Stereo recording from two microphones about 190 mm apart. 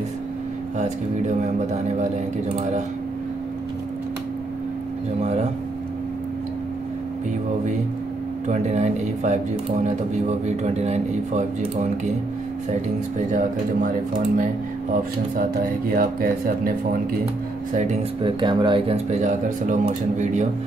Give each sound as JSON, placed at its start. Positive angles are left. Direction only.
{"t": 1.4, "sound": "speech", "side_deg": -40}
{"t": 5.2, "sound": "speech", "side_deg": -35}
{"t": 8.5, "sound": "speech", "side_deg": -35}
{"t": 13.3, "sound": "speech", "side_deg": -45}
{"t": 16.0, "sound": "speech", "side_deg": -50}
{"t": 18.2, "sound": "speech", "side_deg": -25}